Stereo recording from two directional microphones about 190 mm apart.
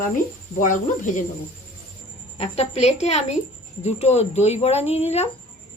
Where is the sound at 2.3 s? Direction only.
35° left (ahead or behind).